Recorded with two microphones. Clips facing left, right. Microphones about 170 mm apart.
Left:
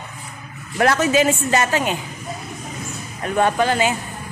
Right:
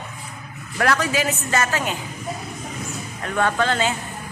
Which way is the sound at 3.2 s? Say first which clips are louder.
Left 3 dB; 20° left (ahead or behind).